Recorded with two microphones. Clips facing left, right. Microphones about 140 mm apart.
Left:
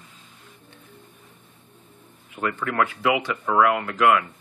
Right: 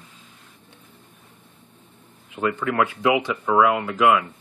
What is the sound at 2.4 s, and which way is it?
Speech, 15° right (ahead or behind).